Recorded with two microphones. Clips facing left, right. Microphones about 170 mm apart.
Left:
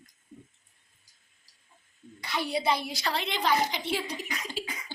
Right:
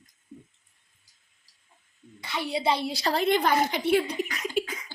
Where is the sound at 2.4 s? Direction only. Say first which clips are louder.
Right 3 dB; 25° right (ahead or behind); by 4.7 s 55° right (ahead or behind).